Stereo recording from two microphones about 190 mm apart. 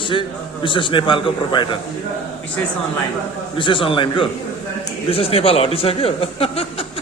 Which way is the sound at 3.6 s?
25° left (ahead or behind).